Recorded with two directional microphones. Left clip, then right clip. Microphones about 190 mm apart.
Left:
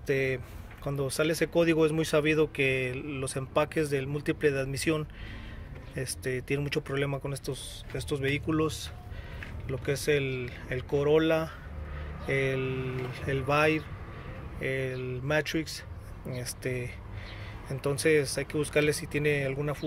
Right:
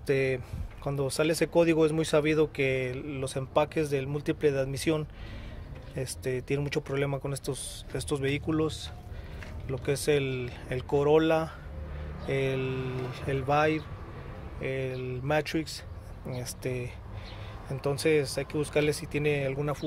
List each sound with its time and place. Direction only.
0.0 s speech: 10° right (ahead or behind); by 8.9 s 5° left (ahead or behind)
9.7 s speech: 10° right (ahead or behind)